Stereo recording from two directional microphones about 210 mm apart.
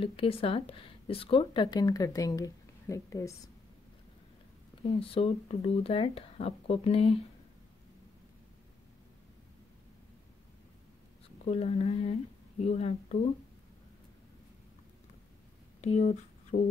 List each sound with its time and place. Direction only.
0.0 s speech: 25° left (ahead or behind)
4.9 s speech: 30° left (ahead or behind)
11.4 s speech: 30° left (ahead or behind)
15.8 s speech: 35° left (ahead or behind)